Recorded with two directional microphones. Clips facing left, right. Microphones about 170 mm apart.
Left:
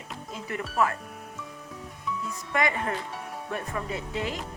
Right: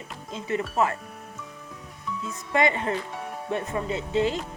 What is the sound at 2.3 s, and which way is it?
Speech, 25° right (ahead or behind).